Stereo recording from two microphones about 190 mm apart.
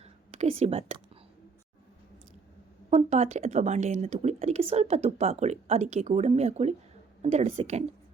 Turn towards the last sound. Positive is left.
turn(degrees=-35)  # may be behind; listen again after turning